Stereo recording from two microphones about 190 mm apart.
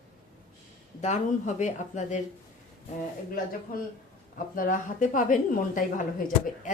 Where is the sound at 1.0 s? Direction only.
40° left (ahead or behind).